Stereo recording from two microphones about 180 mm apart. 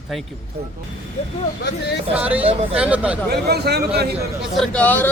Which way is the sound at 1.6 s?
70° left (ahead or behind).